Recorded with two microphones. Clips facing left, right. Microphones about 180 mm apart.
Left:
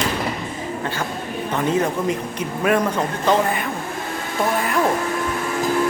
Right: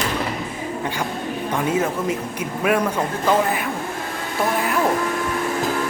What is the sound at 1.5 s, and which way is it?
Speech, 5° right (ahead or behind).